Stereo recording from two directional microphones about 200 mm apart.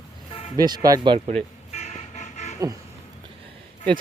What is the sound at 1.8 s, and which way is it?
Vehicle, 35° left (ahead or behind).